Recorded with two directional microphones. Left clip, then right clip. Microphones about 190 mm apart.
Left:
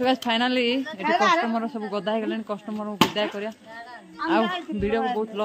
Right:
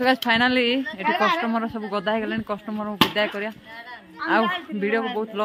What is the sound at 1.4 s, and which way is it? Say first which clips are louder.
Speech: right 1 dB; 10° right (ahead or behind).